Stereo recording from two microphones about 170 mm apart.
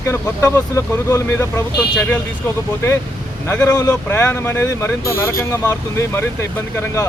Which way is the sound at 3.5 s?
15° left (ahead or behind).